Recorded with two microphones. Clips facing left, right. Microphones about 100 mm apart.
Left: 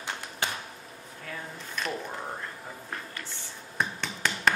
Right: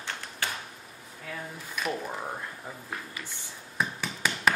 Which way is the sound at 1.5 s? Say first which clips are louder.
Right 2 dB; 5° right (ahead or behind).